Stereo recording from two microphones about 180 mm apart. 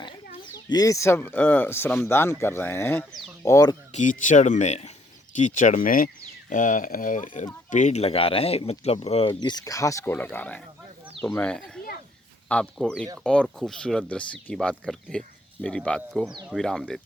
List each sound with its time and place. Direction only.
0.5 s speech: 20° left (ahead or behind)
3.1 s speech: centre (ahead or behind)
3.4 s speech: 20° left (ahead or behind)
3.9 s speech: 45° left (ahead or behind); by 17.0 s 5° left (ahead or behind)